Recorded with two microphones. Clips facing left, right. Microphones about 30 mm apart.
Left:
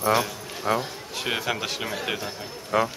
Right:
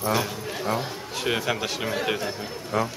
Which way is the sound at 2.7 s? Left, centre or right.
Left.